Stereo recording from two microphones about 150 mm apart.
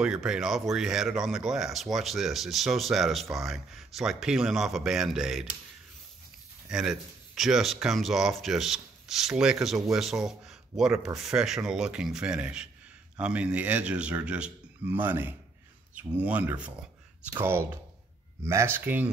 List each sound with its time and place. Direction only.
0.0 s speech: 5° right (ahead or behind)
6.7 s speech: 5° right (ahead or behind)